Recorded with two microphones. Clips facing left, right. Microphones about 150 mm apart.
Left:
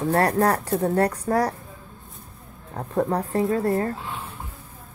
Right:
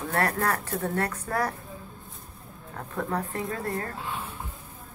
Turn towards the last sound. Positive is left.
turn(degrees=30)  # may be behind; listen again after turning